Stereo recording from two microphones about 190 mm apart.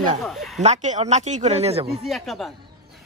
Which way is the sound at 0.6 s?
40° right (ahead or behind).